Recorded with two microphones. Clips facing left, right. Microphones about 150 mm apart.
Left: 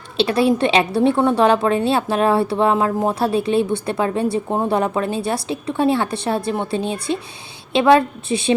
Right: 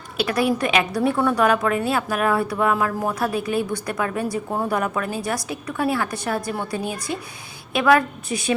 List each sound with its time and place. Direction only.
0.2 s a woman's voice: 25° left (ahead or behind)